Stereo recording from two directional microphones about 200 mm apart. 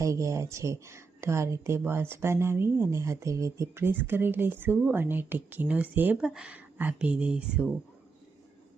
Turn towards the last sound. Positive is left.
turn(degrees=-5)  # may be behind; listen again after turning